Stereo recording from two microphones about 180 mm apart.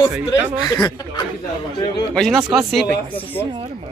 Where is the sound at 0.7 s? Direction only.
20° left (ahead or behind).